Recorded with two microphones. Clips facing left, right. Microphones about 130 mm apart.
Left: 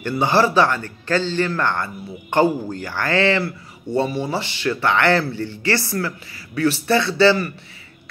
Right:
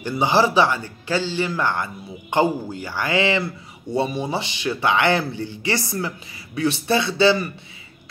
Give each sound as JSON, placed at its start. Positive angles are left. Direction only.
{"t": 0.0, "sound": "speech", "side_deg": -15}